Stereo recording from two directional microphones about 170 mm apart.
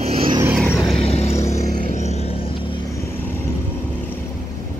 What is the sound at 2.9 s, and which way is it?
Vehicle, 15° left (ahead or behind).